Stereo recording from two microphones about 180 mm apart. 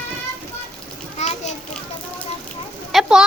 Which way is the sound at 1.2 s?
40° left (ahead or behind).